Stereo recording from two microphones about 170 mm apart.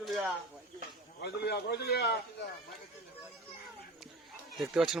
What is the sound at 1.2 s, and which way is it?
Speech, 75° left (ahead or behind).